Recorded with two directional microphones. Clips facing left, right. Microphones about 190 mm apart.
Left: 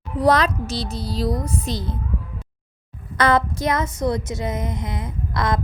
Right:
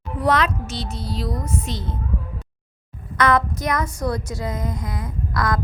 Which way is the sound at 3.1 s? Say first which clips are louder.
Left 1 dB; 30° left (ahead or behind).